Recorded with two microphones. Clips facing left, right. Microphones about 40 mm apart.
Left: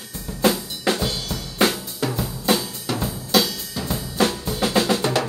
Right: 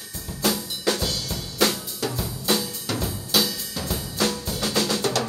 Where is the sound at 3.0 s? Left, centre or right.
Centre.